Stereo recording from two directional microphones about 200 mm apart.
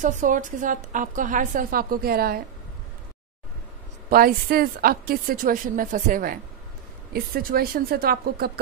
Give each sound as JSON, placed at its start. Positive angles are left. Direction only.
{"t": 0.0, "sound": "a woman's voice", "side_deg": -40}
{"t": 4.1, "sound": "a woman's voice", "side_deg": -45}